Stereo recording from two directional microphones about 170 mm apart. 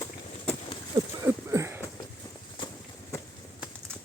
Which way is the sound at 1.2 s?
15° right (ahead or behind).